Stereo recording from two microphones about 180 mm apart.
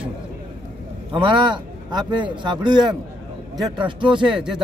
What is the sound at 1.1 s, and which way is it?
Speech, 25° right (ahead or behind).